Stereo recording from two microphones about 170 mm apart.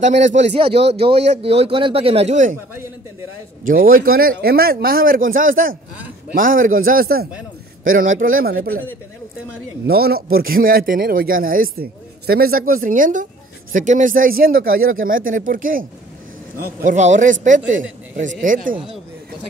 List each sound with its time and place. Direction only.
0.0 s speech: 45° right (ahead or behind)
3.6 s a man's voice: 55° right (ahead or behind)
9.8 s a man's voice: 65° right (ahead or behind)
16.8 s a man's voice: 45° right (ahead or behind)